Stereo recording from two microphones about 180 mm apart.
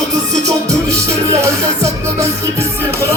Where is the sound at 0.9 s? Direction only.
15° right (ahead or behind).